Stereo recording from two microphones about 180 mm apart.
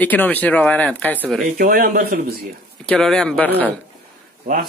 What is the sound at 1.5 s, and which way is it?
Speech, 55° right (ahead or behind).